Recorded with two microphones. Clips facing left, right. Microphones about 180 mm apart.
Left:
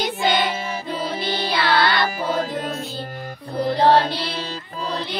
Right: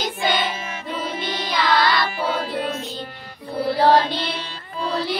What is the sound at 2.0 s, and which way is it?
Music, 45° left (ahead or behind).